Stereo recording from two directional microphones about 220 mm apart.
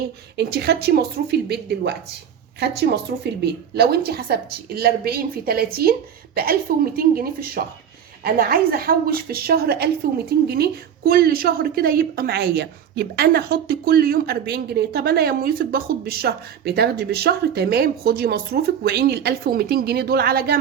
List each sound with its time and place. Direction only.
0.3 s a woman's voice: 50° right (ahead or behind)